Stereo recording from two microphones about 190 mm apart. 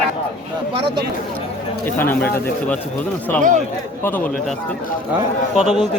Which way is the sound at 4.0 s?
10° left (ahead or behind).